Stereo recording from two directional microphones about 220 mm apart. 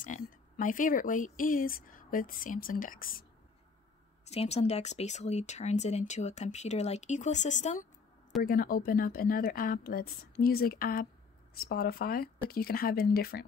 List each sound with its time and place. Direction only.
0.0 s speech: 35° left (ahead or behind)
4.2 s speech: 30° left (ahead or behind)